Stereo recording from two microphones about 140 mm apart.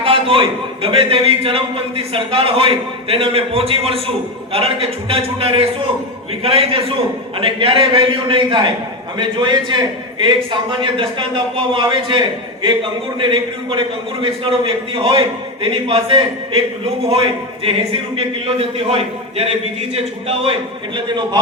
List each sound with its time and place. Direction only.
0.0 s a man's voice: 40° right (ahead or behind)
18.9 s a man's voice: 50° right (ahead or behind)